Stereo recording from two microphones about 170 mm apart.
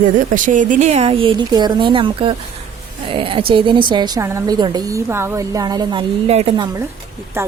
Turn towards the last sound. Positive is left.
turn(degrees=-15)  # may be behind; listen again after turning